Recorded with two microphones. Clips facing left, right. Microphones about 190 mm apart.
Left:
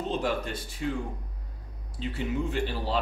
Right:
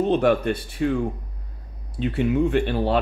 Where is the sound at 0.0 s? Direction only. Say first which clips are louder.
Right 10 dB; 65° right (ahead or behind).